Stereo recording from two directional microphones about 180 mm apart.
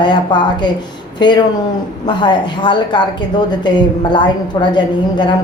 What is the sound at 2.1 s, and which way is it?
Speech, 25° left (ahead or behind).